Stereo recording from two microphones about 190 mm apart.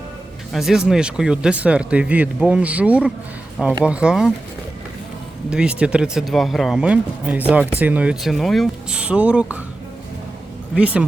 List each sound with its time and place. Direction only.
0.5 s speech: centre (ahead or behind)
5.5 s speech: 5° right (ahead or behind)
10.8 s speech: 5° right (ahead or behind)